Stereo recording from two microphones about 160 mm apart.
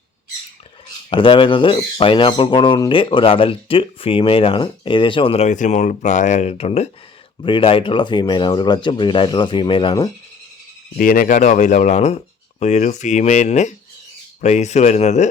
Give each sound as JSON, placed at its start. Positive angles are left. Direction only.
{"t": 1.1, "sound": "speech", "side_deg": 30}
{"t": 10.9, "sound": "speech", "side_deg": 60}